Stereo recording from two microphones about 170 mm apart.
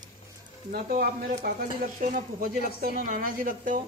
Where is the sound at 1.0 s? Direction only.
55° right (ahead or behind).